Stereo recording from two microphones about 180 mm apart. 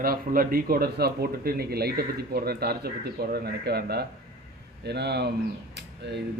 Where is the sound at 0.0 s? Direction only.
55° right (ahead or behind).